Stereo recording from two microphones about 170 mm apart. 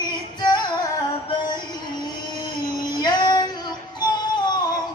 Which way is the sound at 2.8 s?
25° left (ahead or behind).